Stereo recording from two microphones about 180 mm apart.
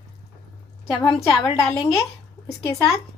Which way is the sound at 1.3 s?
25° left (ahead or behind).